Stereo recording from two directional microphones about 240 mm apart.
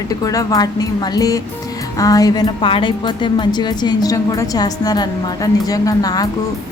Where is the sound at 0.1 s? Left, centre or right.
Centre.